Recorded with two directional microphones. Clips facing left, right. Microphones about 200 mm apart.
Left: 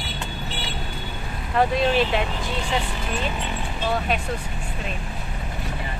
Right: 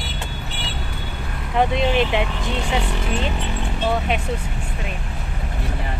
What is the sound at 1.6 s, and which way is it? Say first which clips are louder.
Speech: right 1 dB; 20° right (ahead or behind).